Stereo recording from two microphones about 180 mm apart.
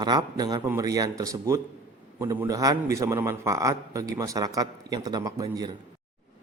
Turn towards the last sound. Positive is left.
turn(degrees=-20)  # may be behind; listen again after turning